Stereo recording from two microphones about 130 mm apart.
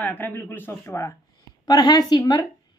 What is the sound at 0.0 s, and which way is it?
A man's voice, 15° left (ahead or behind).